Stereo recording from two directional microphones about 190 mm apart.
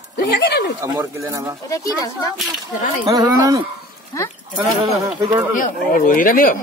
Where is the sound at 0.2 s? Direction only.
60° left (ahead or behind).